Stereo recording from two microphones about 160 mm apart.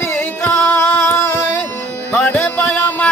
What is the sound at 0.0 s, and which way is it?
Music, 15° left (ahead or behind).